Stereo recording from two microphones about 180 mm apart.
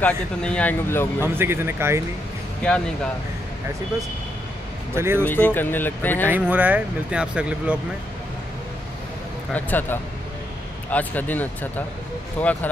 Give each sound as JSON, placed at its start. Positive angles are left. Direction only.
{"t": 0.0, "sound": "speech", "side_deg": 5}
{"t": 1.2, "sound": "speech", "side_deg": -15}
{"t": 2.6, "sound": "speech", "side_deg": 5}
{"t": 4.9, "sound": "speech", "side_deg": -15}
{"t": 5.2, "sound": "speech", "side_deg": 10}
{"t": 6.3, "sound": "speech", "side_deg": -10}
{"t": 9.5, "sound": "speech", "side_deg": 10}